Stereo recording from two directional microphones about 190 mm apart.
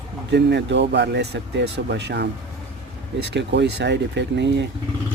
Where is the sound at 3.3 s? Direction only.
65° right (ahead or behind).